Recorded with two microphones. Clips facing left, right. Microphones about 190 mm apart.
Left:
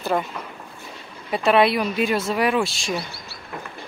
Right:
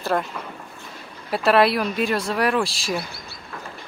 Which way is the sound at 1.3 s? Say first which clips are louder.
Even; centre (ahead or behind).